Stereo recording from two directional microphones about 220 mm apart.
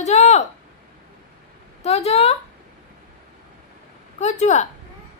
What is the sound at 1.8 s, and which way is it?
Speech, 30° left (ahead or behind).